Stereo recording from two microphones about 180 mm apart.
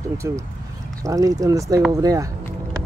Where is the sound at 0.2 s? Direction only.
15° right (ahead or behind).